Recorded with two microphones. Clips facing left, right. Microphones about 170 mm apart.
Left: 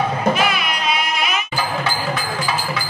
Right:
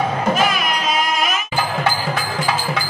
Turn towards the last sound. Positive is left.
turn(degrees=-45)  # may be behind; listen again after turning